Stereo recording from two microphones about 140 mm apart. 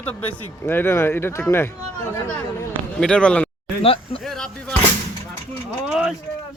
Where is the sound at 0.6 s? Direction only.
15° left (ahead or behind).